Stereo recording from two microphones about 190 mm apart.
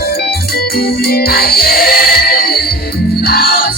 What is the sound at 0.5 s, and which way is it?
Music, 55° left (ahead or behind).